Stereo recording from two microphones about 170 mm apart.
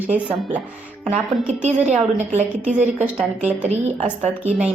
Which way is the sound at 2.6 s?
10° right (ahead or behind).